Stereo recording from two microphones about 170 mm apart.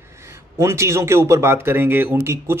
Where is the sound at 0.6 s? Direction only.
15° right (ahead or behind).